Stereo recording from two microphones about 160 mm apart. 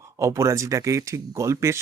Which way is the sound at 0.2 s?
20° right (ahead or behind).